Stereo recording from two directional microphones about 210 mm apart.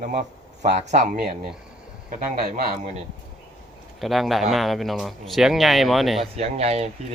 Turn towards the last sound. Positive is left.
turn(degrees=-30)  # may be behind; listen again after turning